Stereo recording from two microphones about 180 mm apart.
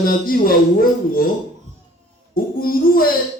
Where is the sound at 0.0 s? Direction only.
55° left (ahead or behind).